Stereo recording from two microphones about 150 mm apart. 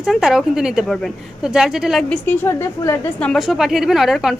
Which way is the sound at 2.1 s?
15° left (ahead or behind).